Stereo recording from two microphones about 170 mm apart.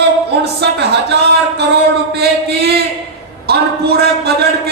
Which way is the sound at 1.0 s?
75° right (ahead or behind).